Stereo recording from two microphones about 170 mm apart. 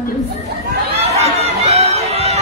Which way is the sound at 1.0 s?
40° right (ahead or behind).